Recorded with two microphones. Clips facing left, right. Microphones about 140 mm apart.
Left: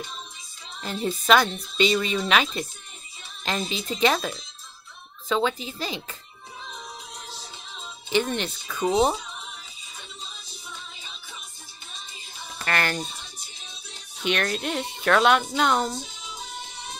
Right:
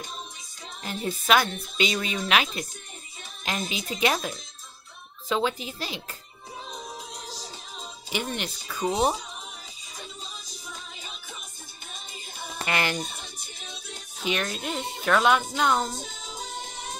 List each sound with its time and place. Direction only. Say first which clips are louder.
0.8 s speech: left 3 dB; 10° right (ahead or behind)
5.3 s speech: left 2 dB; 5° right (ahead or behind)
6.6 s music: right 2 dB; 35° right (ahead or behind)
8.1 s speech: left 6 dB; 10° right (ahead or behind)
9.9 s music: right 2 dB; 40° right (ahead or behind)
12.6 s speech: left 1 dB; 15° right (ahead or behind)
13.0 s music: even; 50° right (ahead or behind)
14.4 s speech: left 3 dB; centre (ahead or behind)
16.0 s music: right 1 dB; 50° right (ahead or behind)